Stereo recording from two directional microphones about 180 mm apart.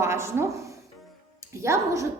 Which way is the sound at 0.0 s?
15° right (ahead or behind).